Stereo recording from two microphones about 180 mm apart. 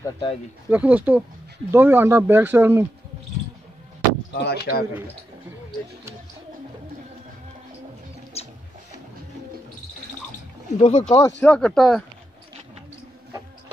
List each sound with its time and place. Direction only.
0.0 s speech: 30° left (ahead or behind)
0.7 s speech: 10° right (ahead or behind)
4.3 s speech: 60° left (ahead or behind)
8.3 s music: 35° left (ahead or behind)
10.8 s speech: 40° left (ahead or behind)
11.1 s speech: 10° left (ahead or behind)